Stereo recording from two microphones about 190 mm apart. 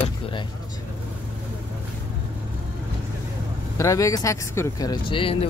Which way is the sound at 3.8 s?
15° left (ahead or behind).